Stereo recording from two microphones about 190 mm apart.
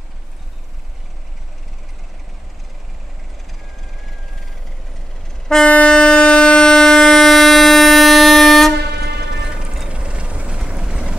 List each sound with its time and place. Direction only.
5.5 s train: 5° left (ahead or behind)
9.1 s mechanisms: 5° right (ahead or behind)